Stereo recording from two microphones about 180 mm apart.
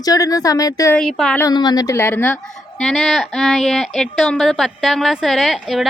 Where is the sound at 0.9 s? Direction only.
Centre (ahead or behind).